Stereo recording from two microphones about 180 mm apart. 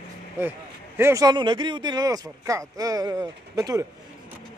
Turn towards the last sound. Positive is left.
turn(degrees=-20)  # may be behind; listen again after turning